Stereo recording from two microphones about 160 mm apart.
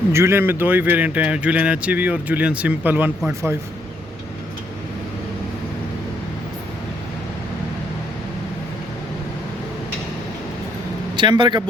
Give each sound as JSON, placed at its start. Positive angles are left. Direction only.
{"t": 0.1, "sound": "speech", "side_deg": -15}
{"t": 11.2, "sound": "speech", "side_deg": -30}